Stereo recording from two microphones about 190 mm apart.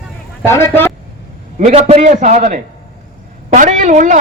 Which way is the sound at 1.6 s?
35° right (ahead or behind).